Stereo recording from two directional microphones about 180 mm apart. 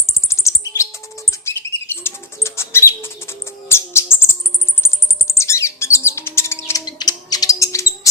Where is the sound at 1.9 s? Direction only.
15° left (ahead or behind).